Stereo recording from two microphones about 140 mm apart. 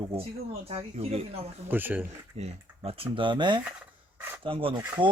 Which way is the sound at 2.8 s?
40° right (ahead or behind).